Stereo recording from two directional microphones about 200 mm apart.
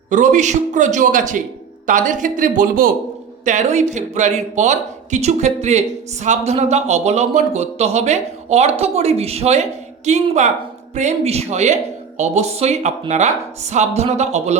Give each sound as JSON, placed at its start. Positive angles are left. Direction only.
{"t": 0.1, "sound": "a man's voice", "side_deg": -40}